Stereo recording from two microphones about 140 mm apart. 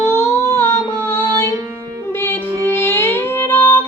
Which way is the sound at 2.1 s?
15° left (ahead or behind).